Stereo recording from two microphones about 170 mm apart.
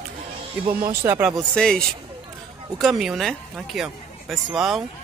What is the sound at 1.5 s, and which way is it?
Speech, 5° left (ahead or behind).